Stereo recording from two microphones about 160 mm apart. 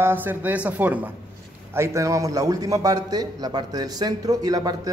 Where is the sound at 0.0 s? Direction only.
10° right (ahead or behind).